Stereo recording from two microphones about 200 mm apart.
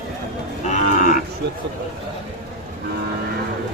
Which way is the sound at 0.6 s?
35° left (ahead or behind).